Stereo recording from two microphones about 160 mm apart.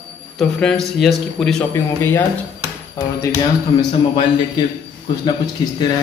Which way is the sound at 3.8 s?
30° left (ahead or behind).